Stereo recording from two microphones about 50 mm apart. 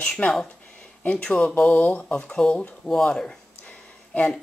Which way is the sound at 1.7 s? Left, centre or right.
Left.